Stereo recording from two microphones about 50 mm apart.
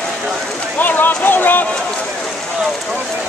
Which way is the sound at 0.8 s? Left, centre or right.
Left.